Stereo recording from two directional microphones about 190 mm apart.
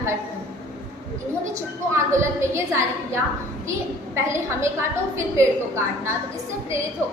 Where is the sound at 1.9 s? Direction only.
15° right (ahead or behind).